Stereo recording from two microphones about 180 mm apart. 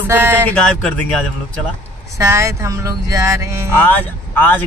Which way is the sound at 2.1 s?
15° right (ahead or behind).